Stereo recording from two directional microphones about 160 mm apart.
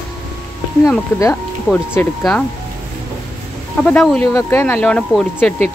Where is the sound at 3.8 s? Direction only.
5° left (ahead or behind).